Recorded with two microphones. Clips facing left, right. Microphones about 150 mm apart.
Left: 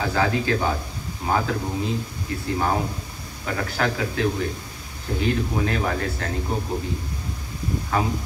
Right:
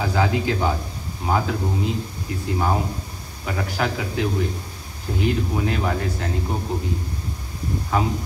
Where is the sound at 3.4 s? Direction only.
15° right (ahead or behind).